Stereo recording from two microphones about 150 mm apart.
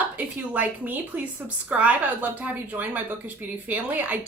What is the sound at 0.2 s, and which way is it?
A woman's voice, 10° right (ahead or behind).